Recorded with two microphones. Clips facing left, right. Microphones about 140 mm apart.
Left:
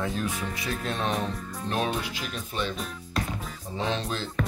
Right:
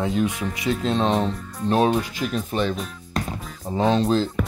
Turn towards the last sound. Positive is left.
turn(degrees=-45)  # may be behind; listen again after turning